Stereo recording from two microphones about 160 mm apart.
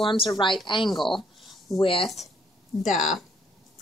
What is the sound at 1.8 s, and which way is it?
Speech, 35° left (ahead or behind).